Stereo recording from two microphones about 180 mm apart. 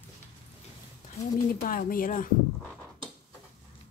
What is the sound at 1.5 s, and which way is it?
Speech, 50° left (ahead or behind).